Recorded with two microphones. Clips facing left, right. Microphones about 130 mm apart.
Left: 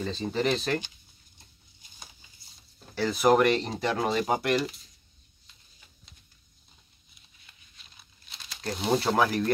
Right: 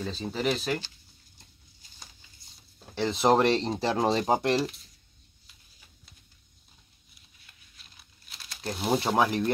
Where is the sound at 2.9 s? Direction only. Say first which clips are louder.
Left 1 dB; 20° right (ahead or behind).